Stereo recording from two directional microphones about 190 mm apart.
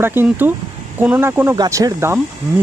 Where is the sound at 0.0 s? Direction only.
10° right (ahead or behind).